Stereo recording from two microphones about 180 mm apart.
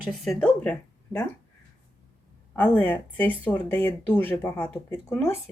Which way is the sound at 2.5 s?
10° left (ahead or behind).